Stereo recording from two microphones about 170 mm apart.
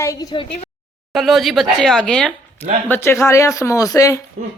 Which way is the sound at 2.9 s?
15° left (ahead or behind).